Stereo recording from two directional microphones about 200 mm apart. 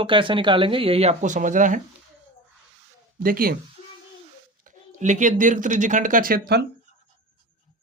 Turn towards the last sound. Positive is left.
turn(degrees=-50)  # may be behind; listen again after turning